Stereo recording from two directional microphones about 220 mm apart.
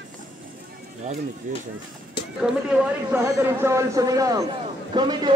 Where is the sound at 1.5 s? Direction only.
35° right (ahead or behind).